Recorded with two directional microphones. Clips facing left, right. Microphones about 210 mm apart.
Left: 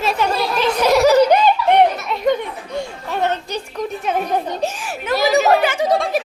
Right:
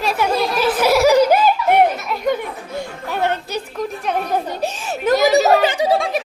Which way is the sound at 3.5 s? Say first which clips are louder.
Even; centre (ahead or behind).